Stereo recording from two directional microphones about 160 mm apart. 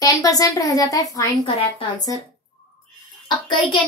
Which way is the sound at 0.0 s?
20° left (ahead or behind).